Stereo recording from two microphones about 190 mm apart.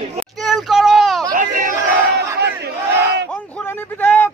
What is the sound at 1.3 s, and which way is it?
Crowd, 45° right (ahead or behind).